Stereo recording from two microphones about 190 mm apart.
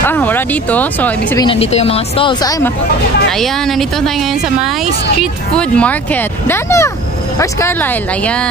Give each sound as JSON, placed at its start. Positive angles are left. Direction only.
{"t": 0.0, "sound": "speech", "side_deg": 10}
{"t": 1.4, "sound": "speech", "side_deg": 30}
{"t": 3.3, "sound": "speech", "side_deg": 0}